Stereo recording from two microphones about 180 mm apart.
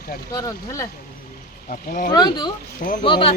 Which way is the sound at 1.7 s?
50° left (ahead or behind).